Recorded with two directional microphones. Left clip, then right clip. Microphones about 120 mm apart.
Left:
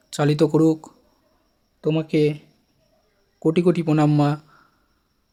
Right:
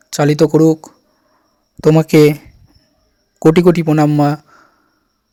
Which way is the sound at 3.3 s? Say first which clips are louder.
Right 10 dB; 80° right.